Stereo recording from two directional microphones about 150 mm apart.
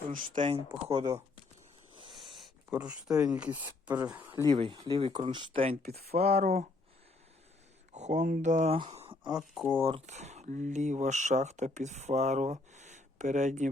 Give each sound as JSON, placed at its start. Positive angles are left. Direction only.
{"t": 0.1, "sound": "speech", "side_deg": -60}
{"t": 0.9, "sound": "speech", "side_deg": -30}
{"t": 2.0, "sound": "a sound", "side_deg": 0}
{"t": 2.7, "sound": "speech", "side_deg": -10}
{"t": 4.4, "sound": "speech", "side_deg": -30}
{"t": 7.9, "sound": "speech", "side_deg": -50}
{"t": 8.9, "sound": "a sound", "side_deg": -45}
{"t": 9.6, "sound": "speech", "side_deg": -10}
{"t": 9.8, "sound": "speech", "side_deg": -45}